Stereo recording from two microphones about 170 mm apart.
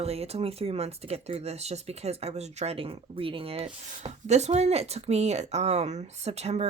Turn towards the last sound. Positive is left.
turn(degrees=-35)  # may be behind; listen again after turning